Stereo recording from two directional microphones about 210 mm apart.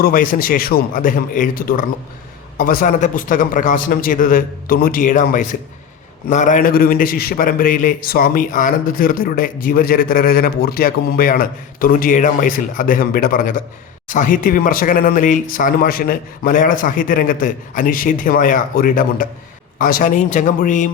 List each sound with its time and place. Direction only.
0.0 s a man's voice: 40° left (ahead or behind)